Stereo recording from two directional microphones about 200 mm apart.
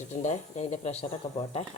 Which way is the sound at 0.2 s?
35° left (ahead or behind).